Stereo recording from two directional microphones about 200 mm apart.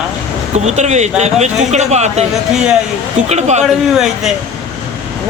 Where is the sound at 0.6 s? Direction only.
35° right (ahead or behind).